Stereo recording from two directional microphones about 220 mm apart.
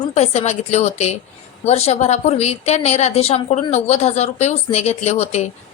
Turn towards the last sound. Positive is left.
turn(degrees=30)  # may be behind; listen again after turning